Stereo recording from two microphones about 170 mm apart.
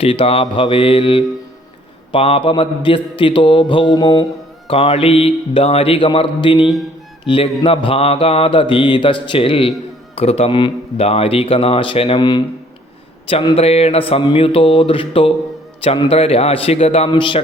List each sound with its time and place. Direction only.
0.0 s mantra: 35° left (ahead or behind)